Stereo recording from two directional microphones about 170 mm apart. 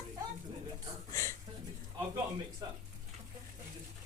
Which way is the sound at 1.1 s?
15° left (ahead or behind).